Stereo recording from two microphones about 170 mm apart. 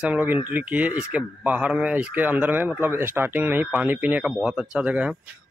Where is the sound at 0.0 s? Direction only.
10° right (ahead or behind).